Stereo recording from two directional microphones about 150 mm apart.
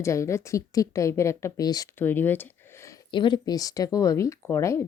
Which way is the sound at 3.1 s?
30° left (ahead or behind).